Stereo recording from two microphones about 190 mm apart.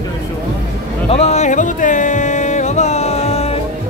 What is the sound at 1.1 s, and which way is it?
Music, 35° left (ahead or behind).